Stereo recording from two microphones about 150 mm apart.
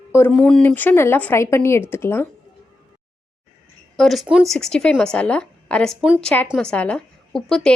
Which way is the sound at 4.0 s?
Centre (ahead or behind).